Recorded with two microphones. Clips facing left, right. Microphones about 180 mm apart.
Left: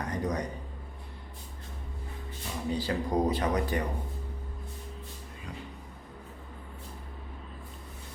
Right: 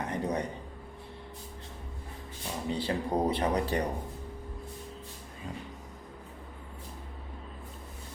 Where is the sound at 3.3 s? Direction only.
30° right (ahead or behind).